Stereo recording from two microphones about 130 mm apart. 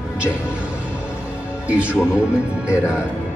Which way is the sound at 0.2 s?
10° right (ahead or behind).